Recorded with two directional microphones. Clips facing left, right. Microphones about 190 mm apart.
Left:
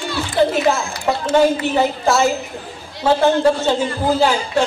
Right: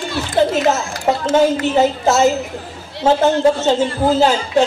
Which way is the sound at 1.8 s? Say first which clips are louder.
Right 3 dB; 20° right (ahead or behind).